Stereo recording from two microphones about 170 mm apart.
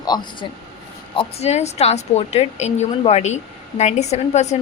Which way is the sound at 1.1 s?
35° left (ahead or behind).